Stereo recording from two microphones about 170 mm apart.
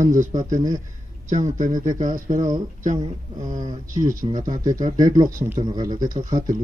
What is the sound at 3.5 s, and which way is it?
Speech, 45° right (ahead or behind).